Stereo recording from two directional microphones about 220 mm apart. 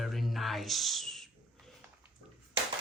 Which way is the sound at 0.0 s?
Centre (ahead or behind).